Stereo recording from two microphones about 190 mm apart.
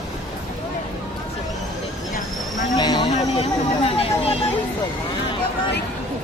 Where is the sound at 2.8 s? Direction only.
20° left (ahead or behind).